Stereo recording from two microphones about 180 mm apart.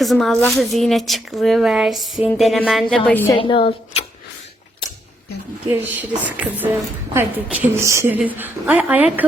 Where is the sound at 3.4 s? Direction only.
30° left (ahead or behind).